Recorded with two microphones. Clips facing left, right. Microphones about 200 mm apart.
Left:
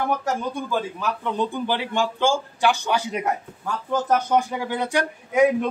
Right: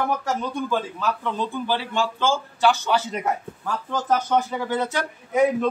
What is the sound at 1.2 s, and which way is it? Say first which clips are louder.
A man's voice: left 2 dB; 15° left (ahead or behind).